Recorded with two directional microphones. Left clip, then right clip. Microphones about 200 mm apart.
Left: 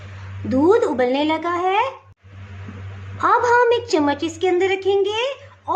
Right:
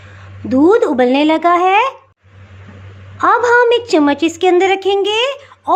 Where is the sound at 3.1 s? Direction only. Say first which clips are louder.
Right 5 dB; 25° right (ahead or behind).